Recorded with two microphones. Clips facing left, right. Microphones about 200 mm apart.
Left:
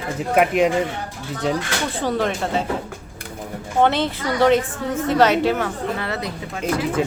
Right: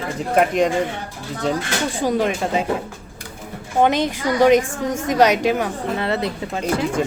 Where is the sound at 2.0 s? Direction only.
10° right (ahead or behind).